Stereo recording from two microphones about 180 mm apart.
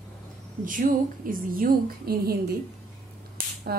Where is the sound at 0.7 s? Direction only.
50° right (ahead or behind).